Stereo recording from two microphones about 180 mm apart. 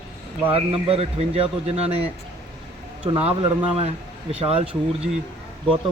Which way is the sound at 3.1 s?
30° right (ahead or behind).